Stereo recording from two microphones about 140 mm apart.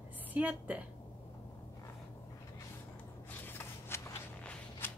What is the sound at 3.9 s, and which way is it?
Walk, 15° left (ahead or behind).